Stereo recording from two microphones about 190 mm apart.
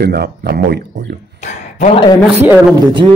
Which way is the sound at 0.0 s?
60° right (ahead or behind).